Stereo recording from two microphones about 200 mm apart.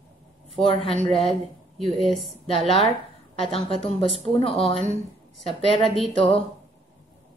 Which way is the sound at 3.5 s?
30° left (ahead or behind).